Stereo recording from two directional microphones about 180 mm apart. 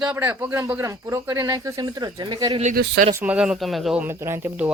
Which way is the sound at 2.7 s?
55° right (ahead or behind).